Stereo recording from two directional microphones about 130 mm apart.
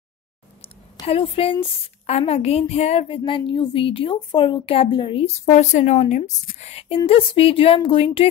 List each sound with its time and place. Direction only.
1.0 s a woman's voice: 45° left (ahead or behind)